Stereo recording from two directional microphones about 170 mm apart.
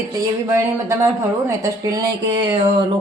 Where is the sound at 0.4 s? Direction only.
15° right (ahead or behind).